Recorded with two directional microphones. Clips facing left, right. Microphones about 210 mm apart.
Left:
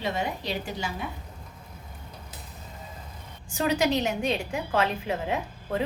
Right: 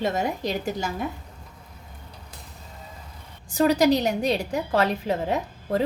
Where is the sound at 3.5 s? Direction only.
40° right (ahead or behind).